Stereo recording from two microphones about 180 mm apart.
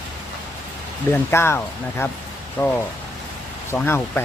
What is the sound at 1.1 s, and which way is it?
Speech, 15° left (ahead or behind).